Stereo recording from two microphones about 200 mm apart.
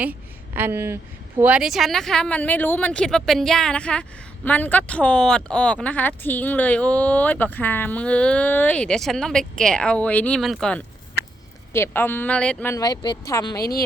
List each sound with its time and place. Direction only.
0.0 s a woman's voice: 10° right (ahead or behind); by 13.6 s 15° left (ahead or behind)
13.6 s speech: 50° left (ahead or behind)